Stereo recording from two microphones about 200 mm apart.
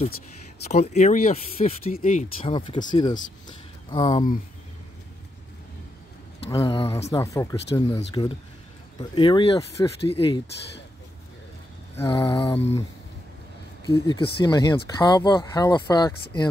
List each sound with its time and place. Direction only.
0.7 s speech: 35° left (ahead or behind)
2.5 s speech: 25° left (ahead or behind)
6.5 s speech: 15° left (ahead or behind)
10.0 s speech: 25° left (ahead or behind)
12.0 s speech: 20° left (ahead or behind)
13.8 s speech: 20° left (ahead or behind)